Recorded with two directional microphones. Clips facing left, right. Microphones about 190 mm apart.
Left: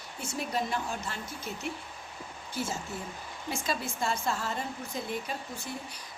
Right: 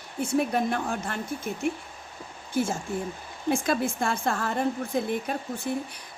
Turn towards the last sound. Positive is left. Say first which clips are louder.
# right 8 dB
turn(degrees=-55)  # may be behind; listen again after turning